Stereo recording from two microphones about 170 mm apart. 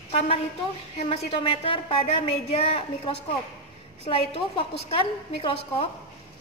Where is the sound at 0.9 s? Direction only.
35° left (ahead or behind).